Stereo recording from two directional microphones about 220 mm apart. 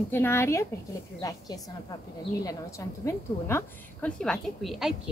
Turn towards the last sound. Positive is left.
turn(degrees=0)  # may be behind; listen again after turning